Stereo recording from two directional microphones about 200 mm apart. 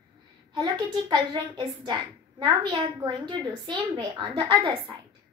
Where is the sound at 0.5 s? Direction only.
20° right (ahead or behind).